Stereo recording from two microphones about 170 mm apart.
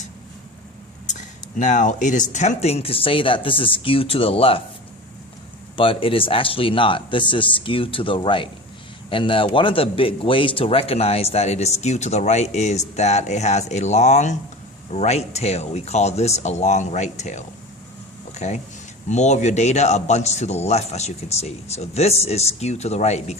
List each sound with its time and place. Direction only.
1.5 s speech: 45° left (ahead or behind)
5.7 s speech: 30° left (ahead or behind)
18.3 s a sound: 40° left (ahead or behind)
19.0 s speech: 45° left (ahead or behind)